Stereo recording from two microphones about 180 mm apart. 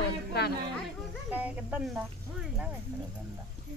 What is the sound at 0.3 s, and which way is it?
Speech, 65° left (ahead or behind).